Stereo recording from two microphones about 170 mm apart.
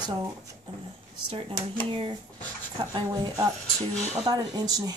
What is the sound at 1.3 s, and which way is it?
Speech, 30° right (ahead or behind).